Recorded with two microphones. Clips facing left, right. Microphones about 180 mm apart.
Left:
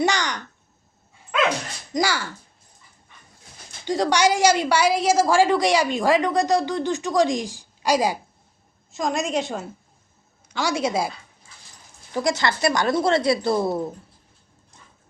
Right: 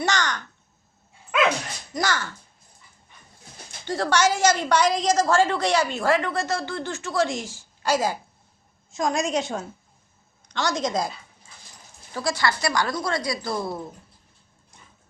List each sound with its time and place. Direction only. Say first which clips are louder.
0.0 s speech: left 3 dB; 15° left (ahead or behind)
1.9 s a woman's voice: left 3 dB; 10° left (ahead or behind)
3.8 s a woman's voice: left 2 dB; 15° left (ahead or behind)
8.9 s a woman's voice: even; centre (ahead or behind)
12.1 s a woman's voice: left 3 dB; 20° left (ahead or behind)